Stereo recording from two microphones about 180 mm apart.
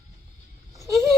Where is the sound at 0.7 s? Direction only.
15° right (ahead or behind).